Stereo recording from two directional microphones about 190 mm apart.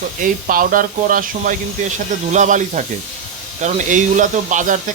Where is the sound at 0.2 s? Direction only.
45° right (ahead or behind).